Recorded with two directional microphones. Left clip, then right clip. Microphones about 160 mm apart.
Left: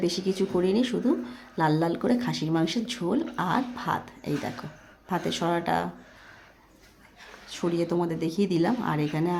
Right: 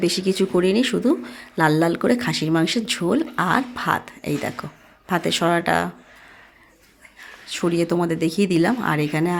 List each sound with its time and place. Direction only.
0.0 s speech: 25° right (ahead or behind)
7.4 s speech: 25° right (ahead or behind)